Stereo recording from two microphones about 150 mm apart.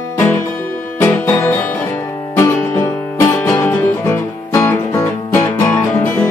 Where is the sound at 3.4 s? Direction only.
20° left (ahead or behind).